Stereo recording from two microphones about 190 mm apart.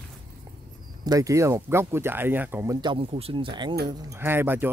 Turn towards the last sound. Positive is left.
turn(degrees=-10)  # may be behind; listen again after turning